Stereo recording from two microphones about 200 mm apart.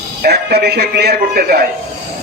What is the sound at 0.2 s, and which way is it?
A man's voice, 55° right (ahead or behind).